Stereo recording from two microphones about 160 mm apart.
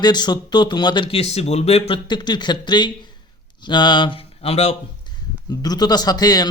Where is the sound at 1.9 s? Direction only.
30° left (ahead or behind).